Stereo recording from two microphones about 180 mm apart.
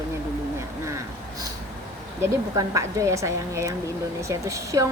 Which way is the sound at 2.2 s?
20° right (ahead or behind).